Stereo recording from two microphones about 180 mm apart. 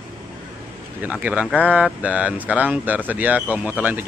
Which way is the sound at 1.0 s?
10° right (ahead or behind).